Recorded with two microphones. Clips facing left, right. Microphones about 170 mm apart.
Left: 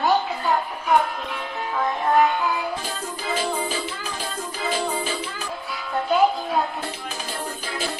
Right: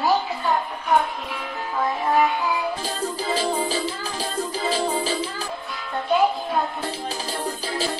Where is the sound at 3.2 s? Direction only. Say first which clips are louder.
Right 1 dB; 35° right (ahead or behind).